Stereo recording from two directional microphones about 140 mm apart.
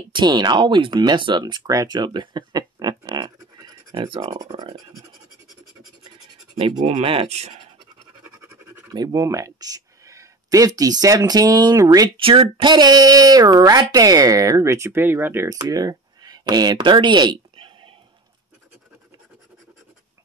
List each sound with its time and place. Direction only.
0.1 s speech: 35° right (ahead or behind)
6.8 s speech: 45° right (ahead or behind)
8.9 s speech: 25° right (ahead or behind)
12.2 s speech: 40° right (ahead or behind)